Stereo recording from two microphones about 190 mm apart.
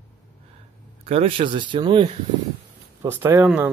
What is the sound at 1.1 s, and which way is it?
Speech, 30° right (ahead or behind).